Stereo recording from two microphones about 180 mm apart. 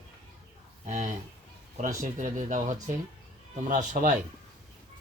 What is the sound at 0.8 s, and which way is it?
Speech, 40° right (ahead or behind).